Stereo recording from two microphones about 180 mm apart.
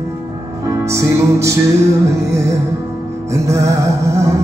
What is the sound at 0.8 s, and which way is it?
Music, 15° right (ahead or behind).